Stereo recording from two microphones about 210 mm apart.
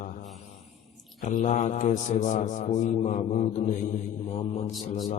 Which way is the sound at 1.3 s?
35° left (ahead or behind).